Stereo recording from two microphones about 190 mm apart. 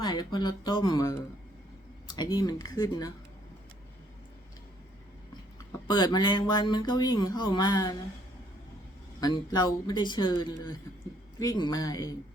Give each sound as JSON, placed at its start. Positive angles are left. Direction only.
{"t": 0.0, "sound": "speech", "side_deg": 20}
{"t": 5.9, "sound": "speech", "side_deg": 25}
{"t": 9.2, "sound": "speech", "side_deg": 20}